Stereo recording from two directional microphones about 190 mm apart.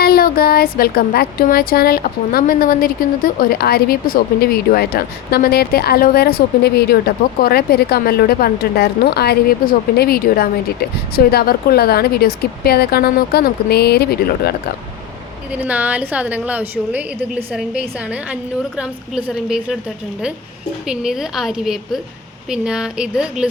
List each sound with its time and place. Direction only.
0.0 s a sound: 50° left (ahead or behind)
7.4 s a woman's voice: 55° left (ahead or behind)
15.5 s a woman's voice: 10° right (ahead or behind)
20.8 s a woman's voice: 5° right (ahead or behind)